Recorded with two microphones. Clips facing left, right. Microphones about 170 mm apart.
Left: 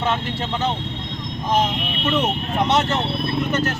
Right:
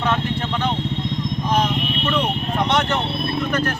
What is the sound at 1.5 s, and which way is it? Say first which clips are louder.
Vehicle: left 1 dB; 20° left (ahead or behind).